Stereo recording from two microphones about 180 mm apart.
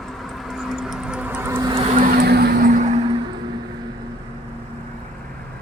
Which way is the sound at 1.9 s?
60° right (ahead or behind).